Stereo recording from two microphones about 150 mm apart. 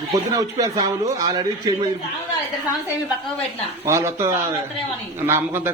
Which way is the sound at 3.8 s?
20° right (ahead or behind).